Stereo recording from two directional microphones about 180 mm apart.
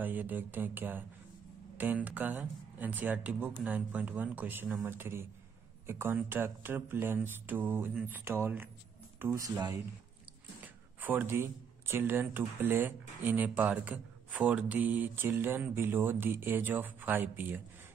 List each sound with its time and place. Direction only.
0.0 s speech: 10° right (ahead or behind)